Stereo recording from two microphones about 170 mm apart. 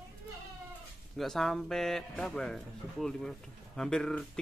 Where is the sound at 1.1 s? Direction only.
Centre (ahead or behind).